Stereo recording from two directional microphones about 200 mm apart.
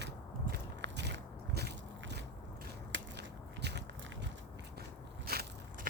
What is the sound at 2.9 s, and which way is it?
Biting, 60° right (ahead or behind).